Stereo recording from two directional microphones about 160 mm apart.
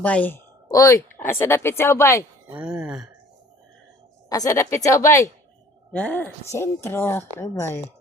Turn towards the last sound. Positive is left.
turn(degrees=20)  # may be behind; listen again after turning